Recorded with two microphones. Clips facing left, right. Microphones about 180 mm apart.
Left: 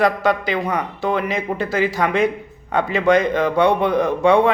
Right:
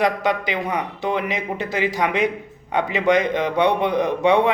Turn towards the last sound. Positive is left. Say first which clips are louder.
# left 2 dB
turn(degrees=-20)  # may be behind; listen again after turning